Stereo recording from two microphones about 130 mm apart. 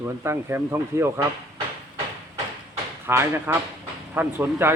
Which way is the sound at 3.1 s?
20° right (ahead or behind).